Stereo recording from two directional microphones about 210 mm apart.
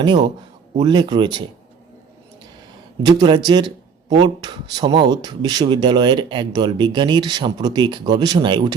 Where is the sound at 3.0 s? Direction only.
20° right (ahead or behind).